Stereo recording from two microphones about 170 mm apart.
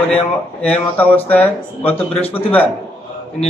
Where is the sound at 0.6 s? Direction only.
10° left (ahead or behind).